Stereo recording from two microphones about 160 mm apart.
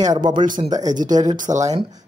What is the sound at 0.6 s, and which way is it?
Speech, 25° right (ahead or behind).